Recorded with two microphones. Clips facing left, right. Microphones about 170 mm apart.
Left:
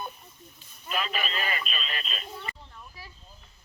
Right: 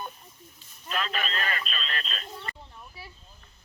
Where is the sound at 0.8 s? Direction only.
5° left (ahead or behind).